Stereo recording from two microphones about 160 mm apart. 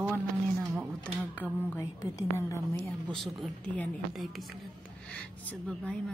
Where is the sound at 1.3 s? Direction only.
10° left (ahead or behind).